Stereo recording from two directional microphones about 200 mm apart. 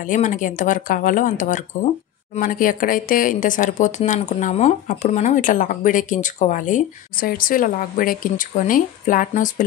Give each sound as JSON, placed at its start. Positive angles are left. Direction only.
{"t": 0.0, "sound": "speech", "side_deg": 40}